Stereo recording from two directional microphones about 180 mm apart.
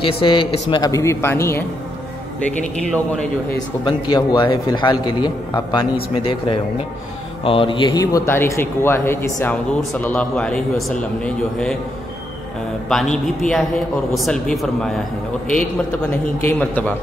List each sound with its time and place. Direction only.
0.0 s a man's voice: 30° left (ahead or behind)
2.8 s a man's voice: 5° left (ahead or behind)
3.8 s a man's voice: 25° left (ahead or behind); by 11.7 s 5° left (ahead or behind)
12.9 s speech: centre (ahead or behind)
16.4 s a man's voice: 10° left (ahead or behind)